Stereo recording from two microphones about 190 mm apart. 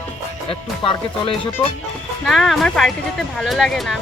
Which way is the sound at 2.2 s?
Centre (ahead or behind).